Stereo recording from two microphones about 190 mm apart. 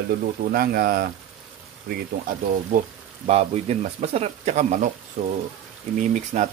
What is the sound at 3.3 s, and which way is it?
Speech, 35° right (ahead or behind).